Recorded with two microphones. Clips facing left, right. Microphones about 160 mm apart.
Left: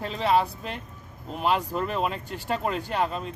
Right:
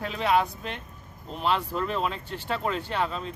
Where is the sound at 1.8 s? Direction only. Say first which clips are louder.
Left 1 dB; 45° left (ahead or behind).